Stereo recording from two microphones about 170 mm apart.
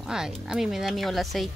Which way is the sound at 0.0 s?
5° right (ahead or behind).